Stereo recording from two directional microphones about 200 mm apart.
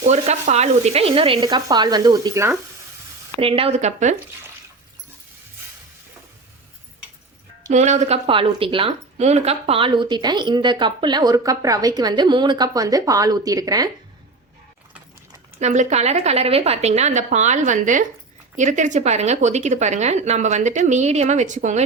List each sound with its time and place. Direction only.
0.0 s speech: 35° right (ahead or behind); by 2.6 s 15° right (ahead or behind)
3.3 s speech: 30° right (ahead or behind)
7.7 s speech: 35° right (ahead or behind); by 13.9 s 20° right (ahead or behind)
15.5 s speech: 35° right (ahead or behind)